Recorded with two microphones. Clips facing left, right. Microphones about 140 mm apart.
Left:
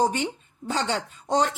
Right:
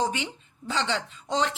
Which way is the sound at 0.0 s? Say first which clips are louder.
Left 4 dB; 45° left (ahead or behind).